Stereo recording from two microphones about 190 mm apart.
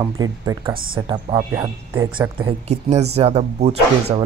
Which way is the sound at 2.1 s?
25° right (ahead or behind).